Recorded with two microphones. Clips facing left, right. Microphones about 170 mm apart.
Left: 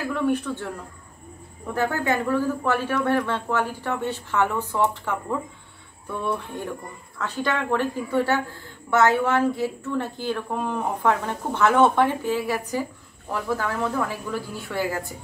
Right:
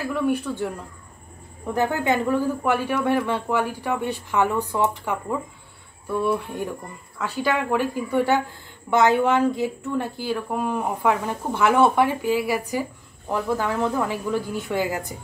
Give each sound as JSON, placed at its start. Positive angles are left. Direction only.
{"t": 0.1, "sound": "speech", "side_deg": -10}
{"t": 1.7, "sound": "speech", "side_deg": -20}